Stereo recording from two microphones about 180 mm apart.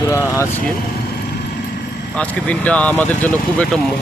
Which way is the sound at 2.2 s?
5° left (ahead or behind).